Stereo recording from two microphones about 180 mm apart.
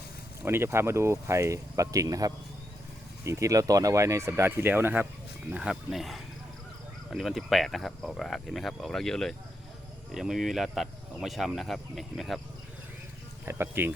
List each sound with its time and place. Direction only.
0.4 s speech: 15° right (ahead or behind)
13.4 s speech: 15° right (ahead or behind)